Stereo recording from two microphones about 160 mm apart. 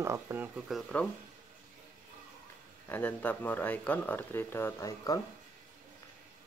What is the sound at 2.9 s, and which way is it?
Speech, 10° left (ahead or behind).